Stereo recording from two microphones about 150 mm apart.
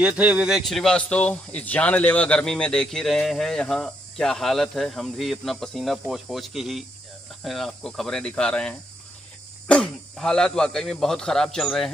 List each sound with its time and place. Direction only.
0.0 s speech: 10° right (ahead or behind)